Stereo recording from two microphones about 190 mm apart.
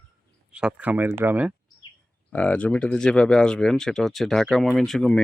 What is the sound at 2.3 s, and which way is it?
Speech, 5° left (ahead or behind).